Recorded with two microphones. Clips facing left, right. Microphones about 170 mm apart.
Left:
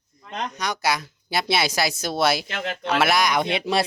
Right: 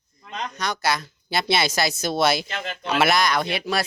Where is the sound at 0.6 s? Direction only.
15° left (ahead or behind).